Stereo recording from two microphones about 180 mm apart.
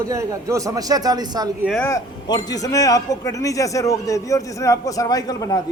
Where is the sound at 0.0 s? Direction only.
20° right (ahead or behind).